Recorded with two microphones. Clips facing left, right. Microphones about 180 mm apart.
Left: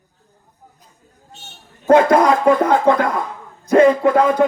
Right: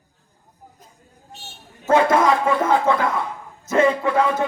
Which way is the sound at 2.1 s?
45° left (ahead or behind).